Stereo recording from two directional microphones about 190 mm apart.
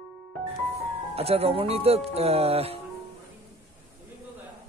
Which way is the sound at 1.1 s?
30° right (ahead or behind).